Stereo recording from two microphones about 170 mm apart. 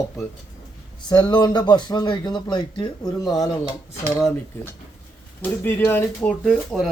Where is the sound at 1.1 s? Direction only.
25° left (ahead or behind).